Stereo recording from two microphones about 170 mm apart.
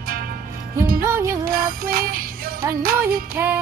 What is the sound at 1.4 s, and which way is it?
Music, 55° right (ahead or behind).